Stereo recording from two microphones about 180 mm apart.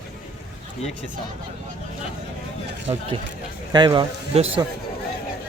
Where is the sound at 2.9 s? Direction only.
30° right (ahead or behind).